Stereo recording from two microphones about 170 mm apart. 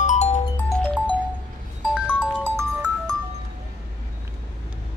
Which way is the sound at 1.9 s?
5° right (ahead or behind).